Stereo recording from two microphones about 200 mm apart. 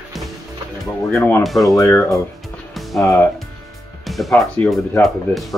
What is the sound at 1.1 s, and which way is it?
Speech, 10° left (ahead or behind).